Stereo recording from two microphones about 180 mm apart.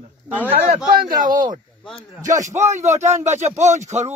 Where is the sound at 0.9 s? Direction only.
50° right (ahead or behind).